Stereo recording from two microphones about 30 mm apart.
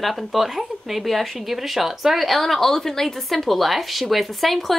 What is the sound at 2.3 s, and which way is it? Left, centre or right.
A woman's voice, centre.